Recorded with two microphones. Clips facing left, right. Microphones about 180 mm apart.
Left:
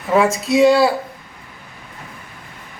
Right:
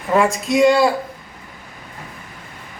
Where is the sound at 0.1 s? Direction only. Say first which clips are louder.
Left 1 dB; 5° left (ahead or behind).